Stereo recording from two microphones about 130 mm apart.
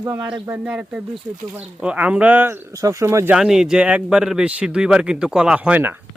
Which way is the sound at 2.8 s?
25° right (ahead or behind).